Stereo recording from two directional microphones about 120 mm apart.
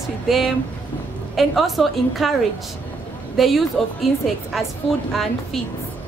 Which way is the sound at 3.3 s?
Centre (ahead or behind).